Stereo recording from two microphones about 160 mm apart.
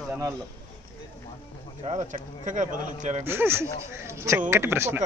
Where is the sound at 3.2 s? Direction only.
15° right (ahead or behind).